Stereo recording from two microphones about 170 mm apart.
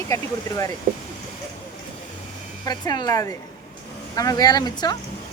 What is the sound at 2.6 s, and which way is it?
Speech, 25° left (ahead or behind).